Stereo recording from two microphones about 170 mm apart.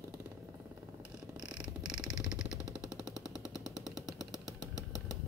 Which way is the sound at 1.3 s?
5° right (ahead or behind).